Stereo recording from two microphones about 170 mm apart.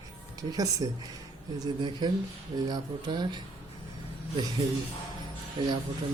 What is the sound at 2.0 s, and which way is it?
Speech, 25° right (ahead or behind).